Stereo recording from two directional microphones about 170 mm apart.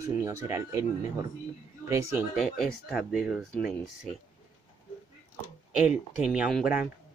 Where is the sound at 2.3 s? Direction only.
Centre (ahead or behind).